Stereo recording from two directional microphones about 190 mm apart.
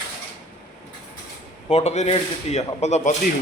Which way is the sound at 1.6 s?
35° left (ahead or behind).